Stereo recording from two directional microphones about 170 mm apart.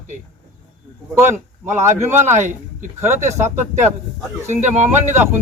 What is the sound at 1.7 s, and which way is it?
Speech, 15° right (ahead or behind).